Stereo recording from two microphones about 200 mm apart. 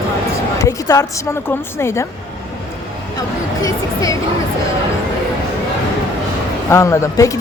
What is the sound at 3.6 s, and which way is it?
Speech, 15° left (ahead or behind).